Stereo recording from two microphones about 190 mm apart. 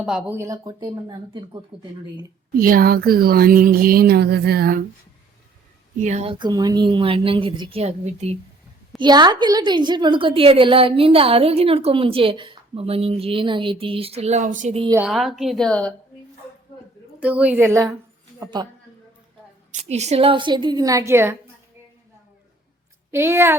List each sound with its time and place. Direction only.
0.0 s a woman's voice: 5° right (ahead or behind)
0.3 s a woman's voice: 15° right (ahead or behind)
2.6 s speech: 50° right (ahead or behind)
6.0 s speech: 35° right (ahead or behind)
6.4 s a woman's voice: 20° right (ahead or behind)
9.0 s a woman's voice: 20° right (ahead or behind); by 14.8 s 40° right (ahead or behind)
14.9 s a woman's voice: centre (ahead or behind)
17.2 s a woman's voice: 5° right (ahead or behind); by 18.7 s 25° right (ahead or behind)
19.7 s a woman's voice: 35° right (ahead or behind); by 21.3 s 15° right (ahead or behind)
23.1 s a woman's voice: 15° right (ahead or behind)